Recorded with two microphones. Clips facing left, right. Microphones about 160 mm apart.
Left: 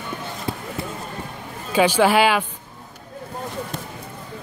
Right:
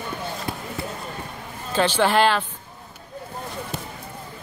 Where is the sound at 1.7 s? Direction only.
10° left (ahead or behind).